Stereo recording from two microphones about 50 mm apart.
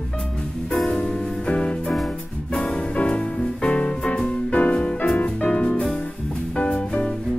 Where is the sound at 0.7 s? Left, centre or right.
Centre.